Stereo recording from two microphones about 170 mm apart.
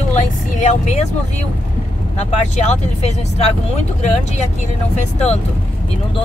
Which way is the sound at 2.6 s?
40° left (ahead or behind).